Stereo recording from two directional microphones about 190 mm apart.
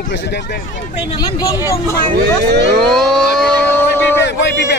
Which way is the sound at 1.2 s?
20° left (ahead or behind).